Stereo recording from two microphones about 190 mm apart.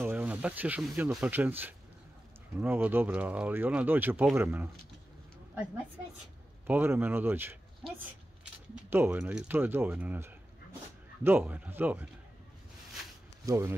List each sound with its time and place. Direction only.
0.0 s speech: 10° right (ahead or behind)
6.7 s speech: 10° right (ahead or behind)
8.9 s speech: 10° right (ahead or behind)
13.5 s speech: 15° right (ahead or behind)